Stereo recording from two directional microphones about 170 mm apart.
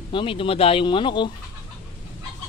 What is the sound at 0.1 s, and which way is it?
Speech, 30° left (ahead or behind).